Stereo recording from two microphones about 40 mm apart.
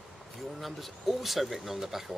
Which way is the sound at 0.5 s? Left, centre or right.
Centre.